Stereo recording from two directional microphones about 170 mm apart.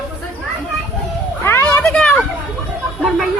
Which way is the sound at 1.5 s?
15° left (ahead or behind).